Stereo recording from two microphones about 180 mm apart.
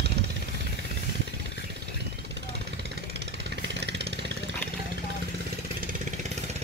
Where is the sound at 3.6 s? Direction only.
70° right (ahead or behind).